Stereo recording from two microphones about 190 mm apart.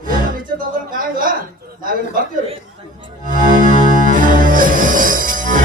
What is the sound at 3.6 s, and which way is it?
Music, 45° right (ahead or behind).